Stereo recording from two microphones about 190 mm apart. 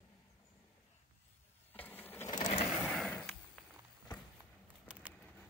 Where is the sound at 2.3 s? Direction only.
35° left (ahead or behind).